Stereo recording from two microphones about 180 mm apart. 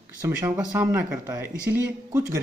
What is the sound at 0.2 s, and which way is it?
Speech, 15° right (ahead or behind).